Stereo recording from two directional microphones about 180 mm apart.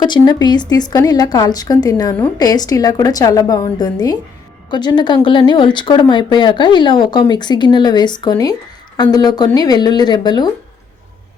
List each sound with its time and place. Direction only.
0.0 s speech: 25° left (ahead or behind)